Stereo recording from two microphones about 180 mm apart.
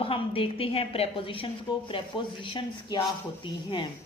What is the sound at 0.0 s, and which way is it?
A woman's voice, 30° left (ahead or behind).